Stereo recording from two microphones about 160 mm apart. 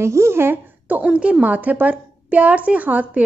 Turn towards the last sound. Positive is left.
turn(degrees=-10)  # may be behind; listen again after turning